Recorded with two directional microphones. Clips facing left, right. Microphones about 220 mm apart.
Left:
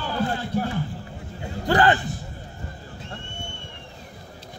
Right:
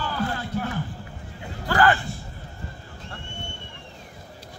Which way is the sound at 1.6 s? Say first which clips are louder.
Left 2 dB; 20° left (ahead or behind).